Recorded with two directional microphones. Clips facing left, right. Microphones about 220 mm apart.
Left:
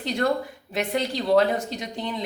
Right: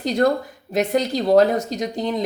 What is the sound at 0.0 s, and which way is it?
A woman's voice, 40° right (ahead or behind).